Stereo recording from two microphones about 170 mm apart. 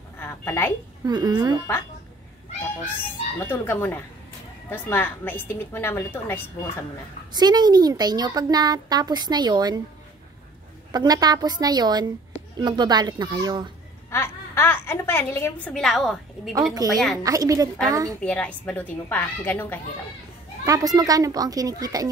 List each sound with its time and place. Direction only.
0.2 s a woman's voice: 15° left (ahead or behind)
1.0 s speech: 25° right (ahead or behind)
3.0 s a woman's voice: 10° left (ahead or behind)
7.3 s speech: 25° right (ahead or behind)
10.9 s speech: 25° right (ahead or behind)
14.1 s speech: 15° left (ahead or behind)
15.7 s a woman's voice: centre (ahead or behind)
17.2 s speech: 20° right (ahead or behind)
18.2 s a woman's voice: 10° left (ahead or behind)
20.6 s speech: 20° right (ahead or behind)